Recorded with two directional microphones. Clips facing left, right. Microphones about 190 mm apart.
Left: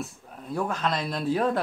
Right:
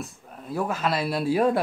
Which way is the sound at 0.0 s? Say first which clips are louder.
Left 1 dB; centre (ahead or behind).